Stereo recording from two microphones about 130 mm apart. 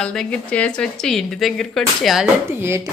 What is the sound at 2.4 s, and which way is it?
Speech, 20° right (ahead or behind).